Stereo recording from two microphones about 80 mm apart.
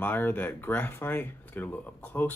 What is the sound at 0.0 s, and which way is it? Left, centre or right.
Speech, left.